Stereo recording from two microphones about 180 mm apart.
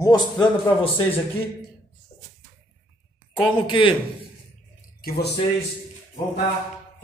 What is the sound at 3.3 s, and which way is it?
Speech, 30° left (ahead or behind).